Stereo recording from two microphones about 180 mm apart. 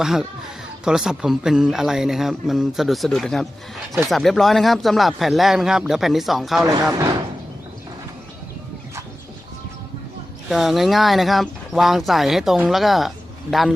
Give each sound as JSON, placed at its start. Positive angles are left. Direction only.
{"t": 0.0, "sound": "speech", "side_deg": 0}
{"t": 6.9, "sound": "speech", "side_deg": -25}
{"t": 10.5, "sound": "speech", "side_deg": 0}